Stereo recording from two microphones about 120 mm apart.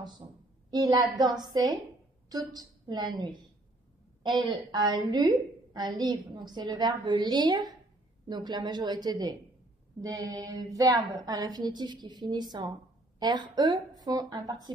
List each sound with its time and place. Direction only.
0.7 s a woman's voice: 35° right (ahead or behind)